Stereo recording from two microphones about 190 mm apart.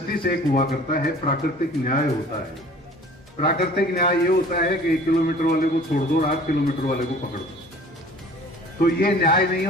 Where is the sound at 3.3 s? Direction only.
55° left (ahead or behind).